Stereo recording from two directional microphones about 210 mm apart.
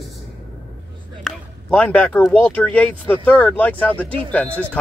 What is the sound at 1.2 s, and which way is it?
Speech, 5° left (ahead or behind).